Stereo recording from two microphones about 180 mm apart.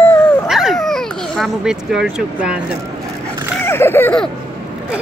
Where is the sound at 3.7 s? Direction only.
15° left (ahead or behind).